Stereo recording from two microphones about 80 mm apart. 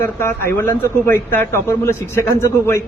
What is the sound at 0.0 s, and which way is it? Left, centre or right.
A man's voice, left.